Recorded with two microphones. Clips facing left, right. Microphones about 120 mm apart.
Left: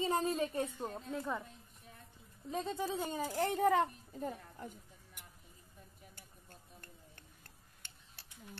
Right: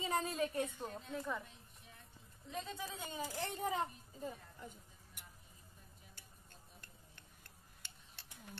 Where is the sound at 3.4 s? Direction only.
70° left (ahead or behind).